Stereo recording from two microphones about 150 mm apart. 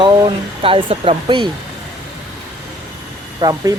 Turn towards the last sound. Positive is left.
turn(degrees=-25)  # may be behind; listen again after turning